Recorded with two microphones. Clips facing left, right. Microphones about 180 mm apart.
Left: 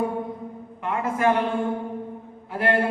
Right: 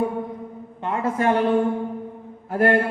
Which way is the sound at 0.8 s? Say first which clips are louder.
Right 1 dB; 35° right (ahead or behind).